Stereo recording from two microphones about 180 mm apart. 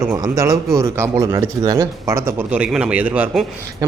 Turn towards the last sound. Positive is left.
turn(degrees=-10)  # may be behind; listen again after turning